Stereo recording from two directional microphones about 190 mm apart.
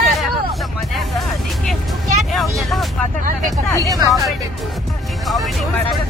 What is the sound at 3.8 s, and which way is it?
Speech, 20° right (ahead or behind).